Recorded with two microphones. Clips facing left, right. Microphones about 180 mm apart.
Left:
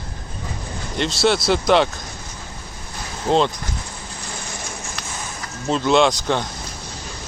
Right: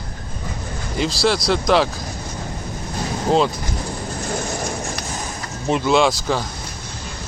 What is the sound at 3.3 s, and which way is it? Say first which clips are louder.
Speech: even; 5° right (ahead or behind).